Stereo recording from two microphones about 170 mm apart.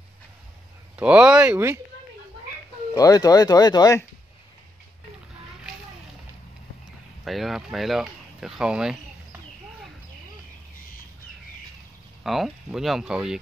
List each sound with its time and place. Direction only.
0.9 s speech: 5° right (ahead or behind)
2.9 s speech: 20° left (ahead or behind)
7.2 s speech: centre (ahead or behind)
12.2 s speech: centre (ahead or behind)